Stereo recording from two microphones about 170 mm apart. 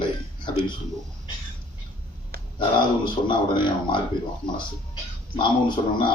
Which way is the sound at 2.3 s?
65° right (ahead or behind).